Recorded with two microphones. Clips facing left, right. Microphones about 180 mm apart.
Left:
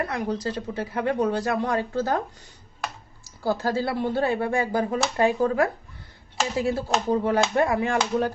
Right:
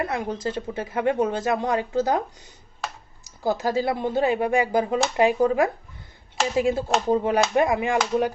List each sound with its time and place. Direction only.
0.0 s speech: 25° right (ahead or behind)
3.4 s speech: 20° right (ahead or behind)